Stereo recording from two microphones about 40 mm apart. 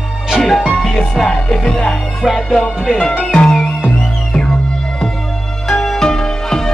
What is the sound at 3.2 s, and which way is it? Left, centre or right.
Music, centre.